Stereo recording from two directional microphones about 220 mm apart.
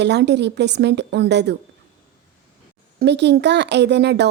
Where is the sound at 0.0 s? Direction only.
50° right (ahead or behind).